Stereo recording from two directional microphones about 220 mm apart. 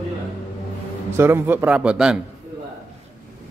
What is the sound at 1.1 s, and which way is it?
A man's voice, 10° right (ahead or behind).